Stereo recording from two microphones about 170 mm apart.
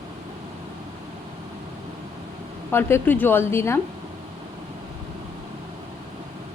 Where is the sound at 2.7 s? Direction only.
10° left (ahead or behind).